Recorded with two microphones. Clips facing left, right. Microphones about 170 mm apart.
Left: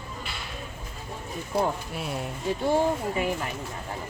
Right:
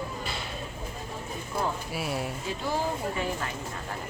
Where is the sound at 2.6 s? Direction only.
20° left (ahead or behind).